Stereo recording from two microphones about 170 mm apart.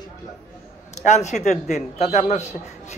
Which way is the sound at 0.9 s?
45° left (ahead or behind).